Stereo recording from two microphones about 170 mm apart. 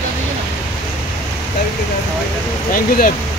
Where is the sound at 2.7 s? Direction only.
55° left (ahead or behind).